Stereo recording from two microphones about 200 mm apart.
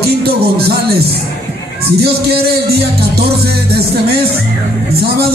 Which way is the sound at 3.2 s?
50° right (ahead or behind).